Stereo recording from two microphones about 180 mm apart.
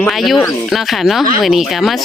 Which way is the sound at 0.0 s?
Centre (ahead or behind).